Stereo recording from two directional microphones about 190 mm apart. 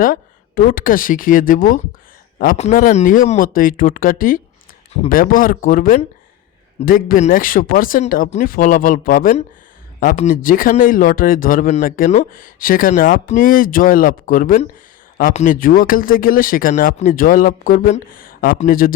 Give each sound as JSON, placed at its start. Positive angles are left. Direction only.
{"t": 0.0, "sound": "speech", "side_deg": 45}